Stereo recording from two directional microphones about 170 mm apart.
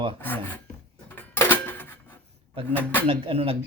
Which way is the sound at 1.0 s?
10° left (ahead or behind).